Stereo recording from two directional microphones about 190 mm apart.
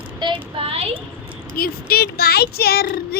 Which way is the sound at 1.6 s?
55° left (ahead or behind).